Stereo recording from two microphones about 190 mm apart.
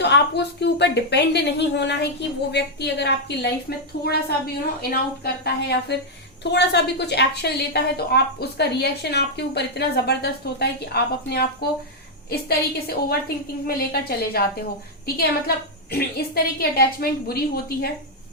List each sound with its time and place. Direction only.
0.0 s a woman's voice: 65° left (ahead or behind)